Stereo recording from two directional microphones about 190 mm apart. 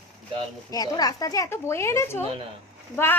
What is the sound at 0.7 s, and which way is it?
A woman's voice, 20° left (ahead or behind).